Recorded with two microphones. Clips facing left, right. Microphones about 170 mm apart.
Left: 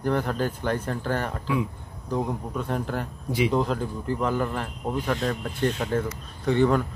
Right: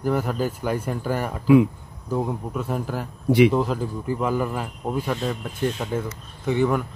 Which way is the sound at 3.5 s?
5° right (ahead or behind).